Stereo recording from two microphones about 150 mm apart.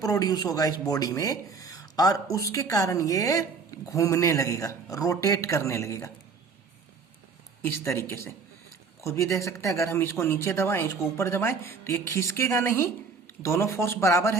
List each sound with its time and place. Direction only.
0.0 s speech: 25° left (ahead or behind)
7.6 s speech: 15° left (ahead or behind)